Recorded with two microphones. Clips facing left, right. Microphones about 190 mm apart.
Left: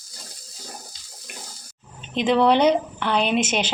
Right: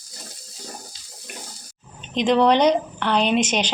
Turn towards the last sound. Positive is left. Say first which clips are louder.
# right 1 dB
turn(degrees=5)  # may be behind; listen again after turning